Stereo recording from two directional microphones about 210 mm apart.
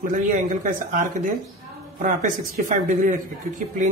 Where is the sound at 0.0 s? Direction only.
40° right (ahead or behind).